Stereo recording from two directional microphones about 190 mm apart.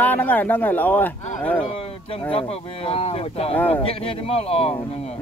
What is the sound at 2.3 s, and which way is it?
Speech, 30° left (ahead or behind).